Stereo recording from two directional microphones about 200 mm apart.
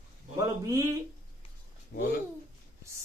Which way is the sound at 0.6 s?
15° right (ahead or behind).